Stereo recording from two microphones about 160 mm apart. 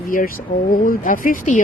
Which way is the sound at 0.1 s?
60° left (ahead or behind).